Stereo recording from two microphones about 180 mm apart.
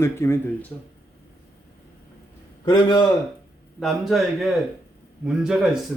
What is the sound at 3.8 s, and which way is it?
Speech, centre (ahead or behind).